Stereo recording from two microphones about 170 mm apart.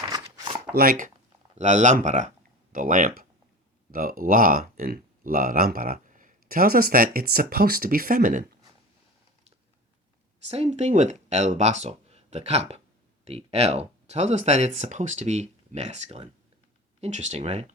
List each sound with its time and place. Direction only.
0.1 s chopping: 25° right (ahead or behind)
0.7 s speech: 60° right (ahead or behind)
10.5 s speech: 40° right (ahead or behind)